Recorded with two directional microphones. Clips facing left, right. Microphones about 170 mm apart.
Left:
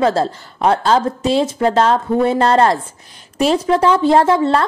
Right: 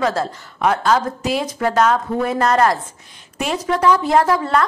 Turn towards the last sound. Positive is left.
turn(degrees=25)  # may be behind; listen again after turning